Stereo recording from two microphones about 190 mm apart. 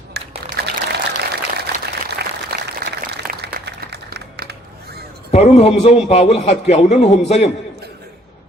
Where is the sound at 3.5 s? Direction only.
55° right (ahead or behind).